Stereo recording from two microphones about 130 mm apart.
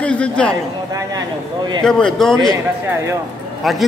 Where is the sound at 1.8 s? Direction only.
5° left (ahead or behind).